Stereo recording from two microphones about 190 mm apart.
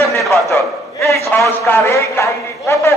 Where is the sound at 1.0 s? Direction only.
15° left (ahead or behind).